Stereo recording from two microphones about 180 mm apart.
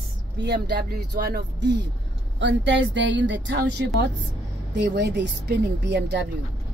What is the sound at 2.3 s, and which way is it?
A woman's voice, 90° right.